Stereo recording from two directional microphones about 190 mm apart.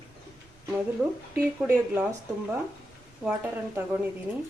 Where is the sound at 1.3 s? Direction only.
10° right (ahead or behind).